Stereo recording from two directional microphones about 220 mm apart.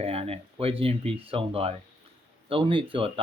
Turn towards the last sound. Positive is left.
turn(degrees=-25)  # may be behind; listen again after turning